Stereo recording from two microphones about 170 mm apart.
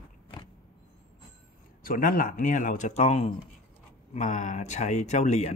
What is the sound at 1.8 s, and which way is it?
Speech, 55° left (ahead or behind).